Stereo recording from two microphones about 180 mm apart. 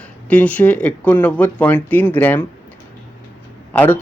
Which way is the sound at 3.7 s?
10° left (ahead or behind).